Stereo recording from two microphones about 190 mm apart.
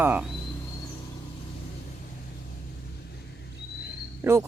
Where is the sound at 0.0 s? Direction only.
10° right (ahead or behind).